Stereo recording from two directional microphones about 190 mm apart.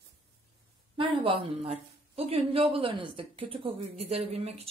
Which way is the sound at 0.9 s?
30° right (ahead or behind).